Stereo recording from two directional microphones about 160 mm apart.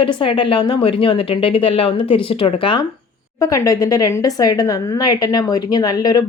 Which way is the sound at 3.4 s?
20° left (ahead or behind).